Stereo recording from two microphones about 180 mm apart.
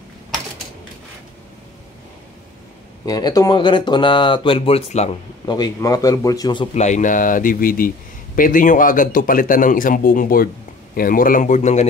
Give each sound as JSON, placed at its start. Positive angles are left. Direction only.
{"t": 3.1, "sound": "speech", "side_deg": 20}
{"t": 5.5, "sound": "speech", "side_deg": 20}
{"t": 6.7, "sound": "speech", "side_deg": 40}